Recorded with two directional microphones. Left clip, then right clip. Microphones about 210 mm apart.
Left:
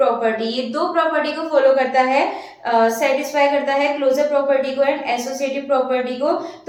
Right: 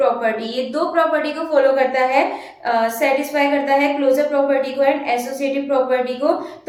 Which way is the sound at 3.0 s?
20° right (ahead or behind).